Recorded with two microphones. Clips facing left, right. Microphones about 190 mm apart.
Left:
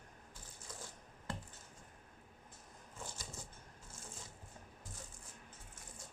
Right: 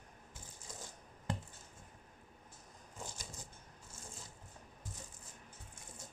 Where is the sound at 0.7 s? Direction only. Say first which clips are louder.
Even; 20° right (ahead or behind).